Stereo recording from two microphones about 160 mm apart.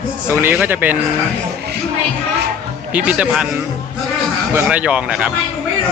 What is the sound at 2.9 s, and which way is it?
Speech, 10° right (ahead or behind).